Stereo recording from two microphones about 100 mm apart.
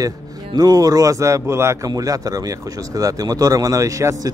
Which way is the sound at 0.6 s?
40° right (ahead or behind).